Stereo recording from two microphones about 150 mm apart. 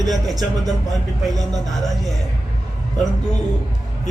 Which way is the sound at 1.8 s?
Centre (ahead or behind).